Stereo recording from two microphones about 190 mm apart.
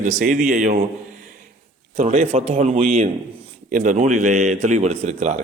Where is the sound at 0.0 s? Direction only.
40° right (ahead or behind).